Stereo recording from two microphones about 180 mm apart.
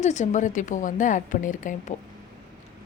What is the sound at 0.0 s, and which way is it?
A woman's voice, 40° left (ahead or behind).